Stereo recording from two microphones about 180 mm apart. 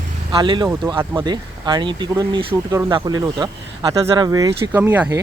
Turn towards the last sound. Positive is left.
turn(degrees=-10)  # may be behind; listen again after turning